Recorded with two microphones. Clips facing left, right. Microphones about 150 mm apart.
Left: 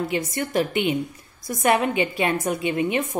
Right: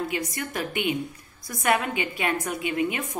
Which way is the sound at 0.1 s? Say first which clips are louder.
Left 6 dB; 25° left (ahead or behind).